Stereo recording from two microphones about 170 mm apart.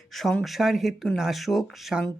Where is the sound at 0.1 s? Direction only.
Centre (ahead or behind).